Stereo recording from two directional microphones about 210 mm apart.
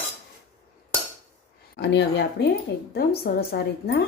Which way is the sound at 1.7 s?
55° left (ahead or behind).